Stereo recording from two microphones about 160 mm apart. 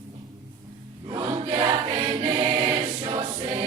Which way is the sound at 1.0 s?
25° right (ahead or behind).